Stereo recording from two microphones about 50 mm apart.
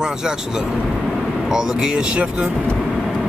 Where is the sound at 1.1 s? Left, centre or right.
Centre.